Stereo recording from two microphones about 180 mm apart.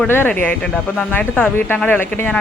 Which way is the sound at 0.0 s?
10° left (ahead or behind).